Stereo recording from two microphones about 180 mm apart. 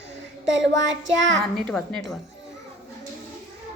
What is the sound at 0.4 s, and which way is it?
Child singing, 90° right.